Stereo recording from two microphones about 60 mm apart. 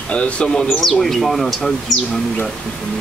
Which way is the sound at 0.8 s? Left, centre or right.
Centre.